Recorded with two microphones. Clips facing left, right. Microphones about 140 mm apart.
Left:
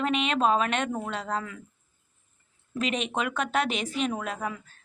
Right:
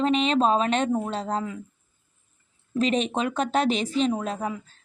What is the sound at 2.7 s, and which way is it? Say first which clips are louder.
A woman's voice: right 5 dB; 35° right (ahead or behind).